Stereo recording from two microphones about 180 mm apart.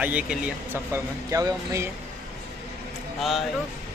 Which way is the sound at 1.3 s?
15° right (ahead or behind).